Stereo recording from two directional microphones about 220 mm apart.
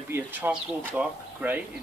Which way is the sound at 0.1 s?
5° right (ahead or behind).